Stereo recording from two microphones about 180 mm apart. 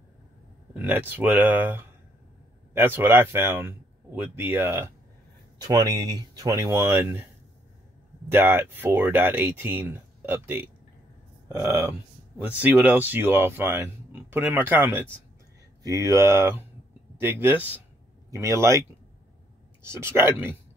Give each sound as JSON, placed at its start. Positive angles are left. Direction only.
{"t": 0.7, "sound": "speech", "side_deg": -10}
{"t": 8.3, "sound": "speech", "side_deg": -10}
{"t": 19.8, "sound": "speech", "side_deg": -15}